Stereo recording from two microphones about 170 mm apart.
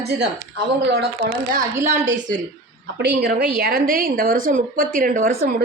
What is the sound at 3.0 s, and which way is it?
A woman's voice, 80° right.